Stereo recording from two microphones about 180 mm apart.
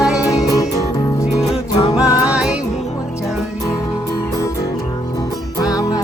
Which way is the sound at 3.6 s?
20° left (ahead or behind).